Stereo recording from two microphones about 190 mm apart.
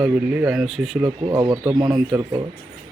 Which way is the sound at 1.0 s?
15° right (ahead or behind).